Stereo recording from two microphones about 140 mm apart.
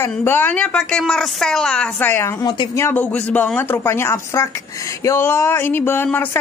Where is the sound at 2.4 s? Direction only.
35° left (ahead or behind).